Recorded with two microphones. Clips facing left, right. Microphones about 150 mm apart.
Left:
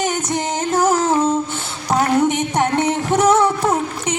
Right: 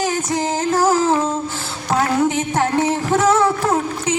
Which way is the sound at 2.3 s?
20° left (ahead or behind).